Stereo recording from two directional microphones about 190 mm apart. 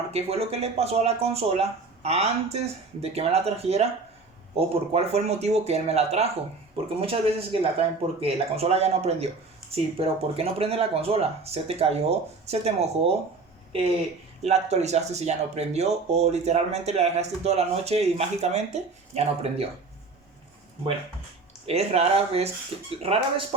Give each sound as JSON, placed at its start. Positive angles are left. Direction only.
{"t": 0.1, "sound": "speech", "side_deg": -30}
{"t": 14.4, "sound": "speech", "side_deg": -35}
{"t": 21.7, "sound": "speech", "side_deg": -35}